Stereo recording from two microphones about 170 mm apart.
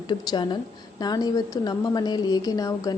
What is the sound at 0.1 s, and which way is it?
A woman's voice, 25° left (ahead or behind).